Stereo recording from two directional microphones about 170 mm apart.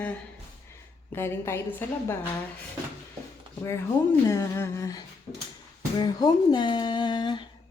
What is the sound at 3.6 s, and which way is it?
A woman's voice, 15° left (ahead or behind).